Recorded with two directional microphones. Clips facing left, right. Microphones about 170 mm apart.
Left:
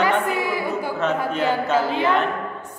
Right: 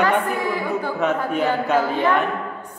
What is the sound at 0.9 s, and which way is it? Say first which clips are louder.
Speech: right 2 dB; 10° right (ahead or behind).